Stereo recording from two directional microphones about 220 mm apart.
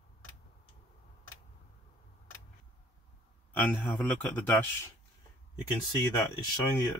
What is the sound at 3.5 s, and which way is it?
A man's voice, 10° left (ahead or behind).